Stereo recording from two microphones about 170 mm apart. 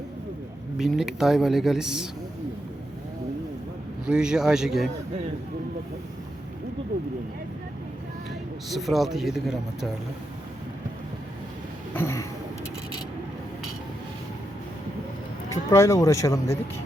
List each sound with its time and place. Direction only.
0.8 s speech: centre (ahead or behind)
4.0 s speech: 5° right (ahead or behind)
8.7 s speech: centre (ahead or behind)
11.9 s a sound: 15° left (ahead or behind)
15.4 s speech: 15° left (ahead or behind)